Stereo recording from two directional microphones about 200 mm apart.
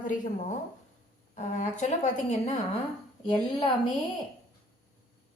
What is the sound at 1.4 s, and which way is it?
A woman's voice, 35° left (ahead or behind).